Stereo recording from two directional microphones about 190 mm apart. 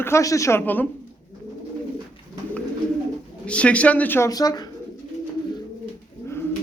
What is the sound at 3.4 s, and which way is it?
Speech, 5° left (ahead or behind).